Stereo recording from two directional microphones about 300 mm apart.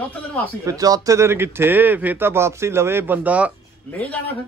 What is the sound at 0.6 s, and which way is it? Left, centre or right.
A man's voice, centre.